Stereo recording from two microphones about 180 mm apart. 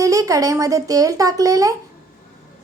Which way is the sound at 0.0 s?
20° right (ahead or behind).